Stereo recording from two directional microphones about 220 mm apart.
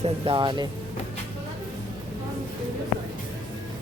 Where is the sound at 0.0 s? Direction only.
25° right (ahead or behind).